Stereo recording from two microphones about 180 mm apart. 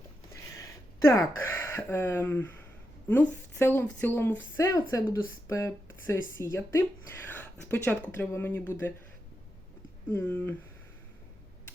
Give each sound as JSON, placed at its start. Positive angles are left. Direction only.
{"t": 0.5, "sound": "speech", "side_deg": 15}
{"t": 10.1, "sound": "speech", "side_deg": 10}